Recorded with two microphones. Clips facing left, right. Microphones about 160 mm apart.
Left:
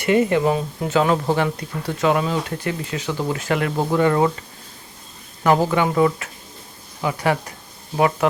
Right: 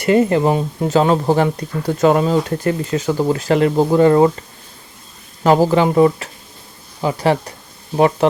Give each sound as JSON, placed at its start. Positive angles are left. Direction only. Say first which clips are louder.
{"t": 0.0, "sound": "speech", "louder": "right 3 dB", "side_deg": -40}
{"t": 5.4, "sound": "speech", "louder": "right 5 dB", "side_deg": -30}